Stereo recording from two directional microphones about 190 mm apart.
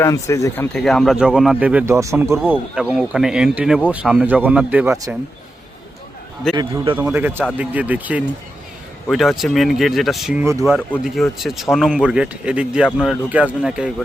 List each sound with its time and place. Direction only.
0.0 s speech: 15° left (ahead or behind); by 2.4 s 15° right (ahead or behind)
2.5 s speech: 5° right (ahead or behind)
6.5 s speech: 25° right (ahead or behind)
6.9 s speech: 10° right (ahead or behind)
10.4 s speech: 15° right (ahead or behind)
10.7 s speech: centre (ahead or behind)